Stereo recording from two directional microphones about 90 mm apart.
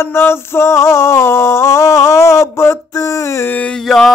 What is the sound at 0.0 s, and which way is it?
Male singing, 25° left (ahead or behind).